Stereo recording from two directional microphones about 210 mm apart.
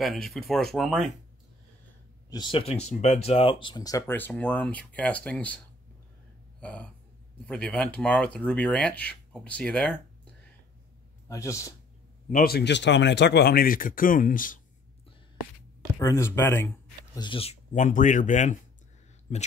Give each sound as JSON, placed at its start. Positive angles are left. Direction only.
{"t": 0.0, "sound": "speech", "side_deg": 0}
{"t": 2.2, "sound": "speech", "side_deg": 20}
{"t": 6.6, "sound": "speech", "side_deg": 5}
{"t": 11.2, "sound": "speech", "side_deg": 15}
{"t": 12.3, "sound": "speech", "side_deg": 45}
{"t": 16.0, "sound": "speech", "side_deg": 15}